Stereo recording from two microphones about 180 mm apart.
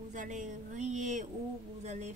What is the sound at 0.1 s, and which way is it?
Speech, 45° right (ahead or behind).